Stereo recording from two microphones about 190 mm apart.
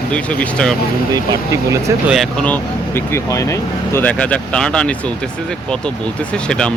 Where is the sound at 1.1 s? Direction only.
15° right (ahead or behind).